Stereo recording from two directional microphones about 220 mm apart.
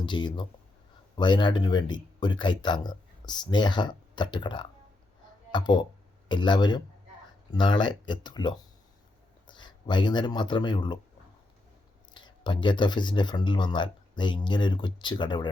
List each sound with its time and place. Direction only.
0.0 s speech: 20° left (ahead or behind)
12.1 s speech: 20° left (ahead or behind)